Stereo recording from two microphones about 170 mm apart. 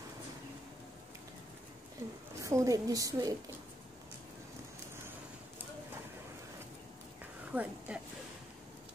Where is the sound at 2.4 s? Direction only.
20° right (ahead or behind).